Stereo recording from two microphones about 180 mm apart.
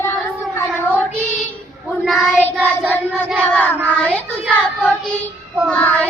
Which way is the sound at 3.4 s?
5° left (ahead or behind).